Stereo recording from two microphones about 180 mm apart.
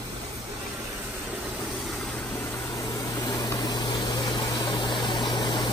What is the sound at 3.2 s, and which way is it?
Vehicle, 20° left (ahead or behind).